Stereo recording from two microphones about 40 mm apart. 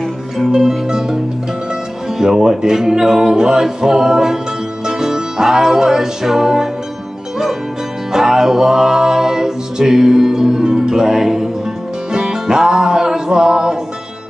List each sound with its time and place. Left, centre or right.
0.5 s music: centre
8.1 s music: centre